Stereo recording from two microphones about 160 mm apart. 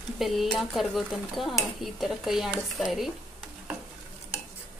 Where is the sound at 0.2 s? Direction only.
Centre (ahead or behind).